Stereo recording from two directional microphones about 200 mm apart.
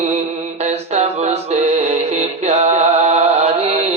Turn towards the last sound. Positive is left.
turn(degrees=-30)  # may be behind; listen again after turning